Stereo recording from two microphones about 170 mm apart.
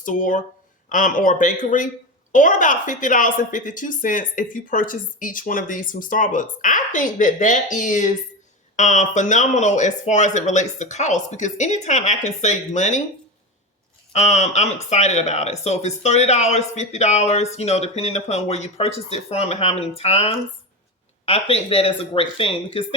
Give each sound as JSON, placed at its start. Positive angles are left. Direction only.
{"t": 0.0, "sound": "a woman's voice", "side_deg": 50}
{"t": 14.1, "sound": "speech", "side_deg": 40}